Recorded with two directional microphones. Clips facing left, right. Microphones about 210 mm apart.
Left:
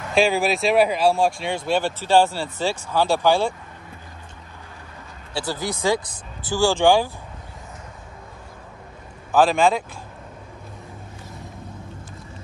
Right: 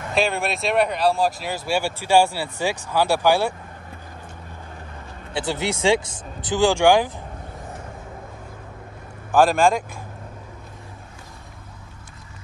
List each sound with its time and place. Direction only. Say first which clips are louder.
0.1 s speech: left 4 dB; centre (ahead or behind)
5.3 s speech: right 2 dB; 20° right (ahead or behind)
5.6 s speech: right 2 dB; 90° right
5.9 s speech: right 3 dB; 20° right (ahead or behind)
9.3 s speech: right 1 dB; 10° right (ahead or behind)